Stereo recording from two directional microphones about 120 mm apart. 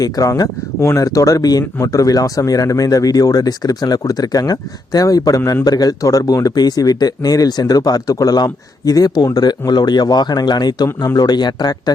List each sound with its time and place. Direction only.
0.0 s speech: 30° left (ahead or behind)